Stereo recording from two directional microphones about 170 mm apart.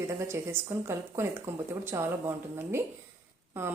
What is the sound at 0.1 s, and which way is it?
Speech, 15° right (ahead or behind).